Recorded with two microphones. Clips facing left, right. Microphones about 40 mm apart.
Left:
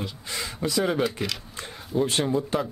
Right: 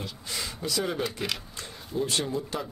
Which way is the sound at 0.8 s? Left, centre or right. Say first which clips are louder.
Left 7 dB; centre.